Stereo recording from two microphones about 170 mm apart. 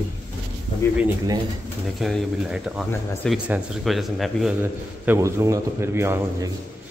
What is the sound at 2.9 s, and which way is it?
Speech, 15° left (ahead or behind).